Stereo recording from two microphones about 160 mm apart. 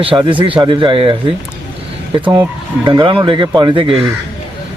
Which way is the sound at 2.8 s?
30° right (ahead or behind).